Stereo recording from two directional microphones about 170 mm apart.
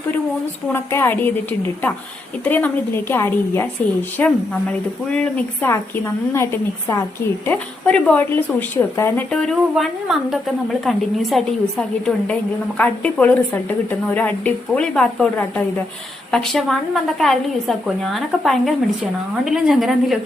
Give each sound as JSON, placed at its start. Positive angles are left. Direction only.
{"t": 0.7, "sound": "speech", "side_deg": 15}
{"t": 6.3, "sound": "a woman's voice", "side_deg": 15}